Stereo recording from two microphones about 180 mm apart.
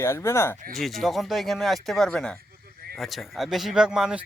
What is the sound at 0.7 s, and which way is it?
Speech, centre (ahead or behind).